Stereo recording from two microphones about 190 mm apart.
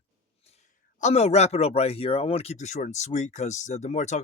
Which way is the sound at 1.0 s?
35° left (ahead or behind).